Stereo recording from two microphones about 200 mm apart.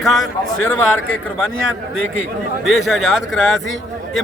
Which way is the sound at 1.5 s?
80° left.